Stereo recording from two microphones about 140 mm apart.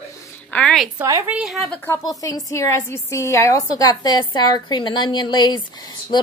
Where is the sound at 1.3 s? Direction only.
5° right (ahead or behind).